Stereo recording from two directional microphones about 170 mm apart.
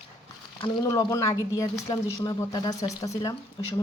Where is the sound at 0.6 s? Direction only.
20° left (ahead or behind).